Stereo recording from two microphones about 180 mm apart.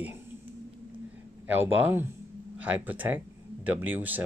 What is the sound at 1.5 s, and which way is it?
Speech, 10° right (ahead or behind).